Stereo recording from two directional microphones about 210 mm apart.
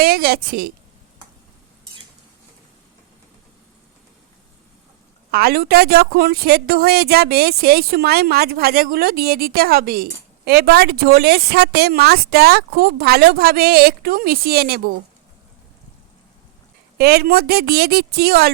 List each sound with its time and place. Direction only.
0.0 s a woman's voice: 45° right (ahead or behind)
5.3 s a woman's voice: 45° right (ahead or behind)
17.0 s a woman's voice: 50° right (ahead or behind)